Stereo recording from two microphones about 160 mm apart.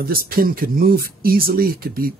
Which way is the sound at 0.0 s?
65° right (ahead or behind).